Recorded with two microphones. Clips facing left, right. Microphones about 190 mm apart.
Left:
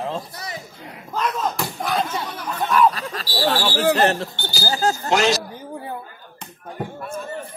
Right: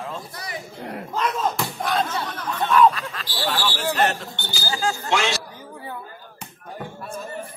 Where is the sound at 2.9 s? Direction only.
40° left (ahead or behind).